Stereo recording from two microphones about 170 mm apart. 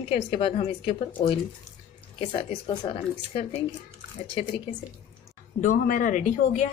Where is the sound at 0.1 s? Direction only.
30° left (ahead or behind).